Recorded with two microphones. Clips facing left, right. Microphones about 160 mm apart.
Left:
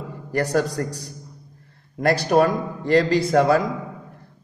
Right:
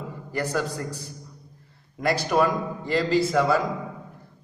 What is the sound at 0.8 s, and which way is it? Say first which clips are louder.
Speech: left 6 dB; 55° left (ahead or behind).